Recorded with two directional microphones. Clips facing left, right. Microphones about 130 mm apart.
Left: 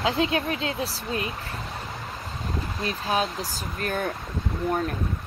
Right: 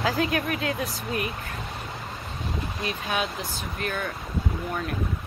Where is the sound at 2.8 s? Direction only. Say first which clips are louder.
Left 3 dB; 35° left (ahead or behind).